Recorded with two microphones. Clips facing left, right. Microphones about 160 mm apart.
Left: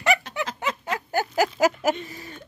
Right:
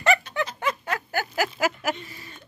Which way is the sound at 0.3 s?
90° left.